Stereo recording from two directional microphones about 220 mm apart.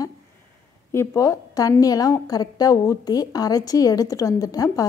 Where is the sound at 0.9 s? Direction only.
15° left (ahead or behind).